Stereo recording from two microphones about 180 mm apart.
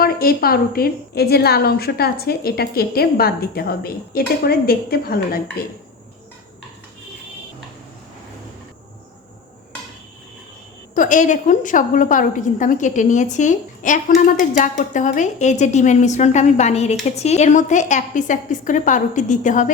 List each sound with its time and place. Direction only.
0.0 s a woman's voice: 55° left (ahead or behind)
10.9 s a woman's voice: 45° left (ahead or behind)